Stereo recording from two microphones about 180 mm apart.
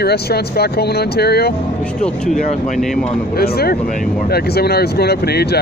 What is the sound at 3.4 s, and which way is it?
Speech, 60° left (ahead or behind).